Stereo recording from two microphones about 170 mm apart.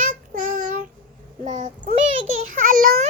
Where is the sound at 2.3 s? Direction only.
50° right (ahead or behind).